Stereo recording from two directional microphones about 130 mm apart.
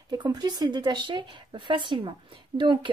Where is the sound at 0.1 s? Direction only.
30° right (ahead or behind).